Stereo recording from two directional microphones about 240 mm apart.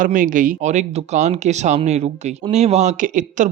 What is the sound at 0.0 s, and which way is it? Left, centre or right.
Speech, right.